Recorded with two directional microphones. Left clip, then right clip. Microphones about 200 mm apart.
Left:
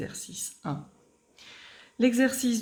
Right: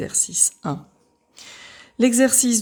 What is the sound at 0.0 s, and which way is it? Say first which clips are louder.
Speech: right 14 dB; 55° right (ahead or behind).